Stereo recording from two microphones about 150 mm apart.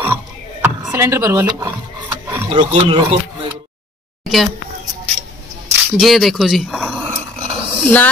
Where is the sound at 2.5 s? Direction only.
35° right (ahead or behind).